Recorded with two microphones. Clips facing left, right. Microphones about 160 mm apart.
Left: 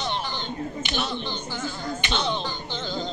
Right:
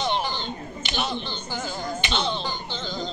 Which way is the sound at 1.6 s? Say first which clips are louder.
Right 3 dB; 15° right (ahead or behind).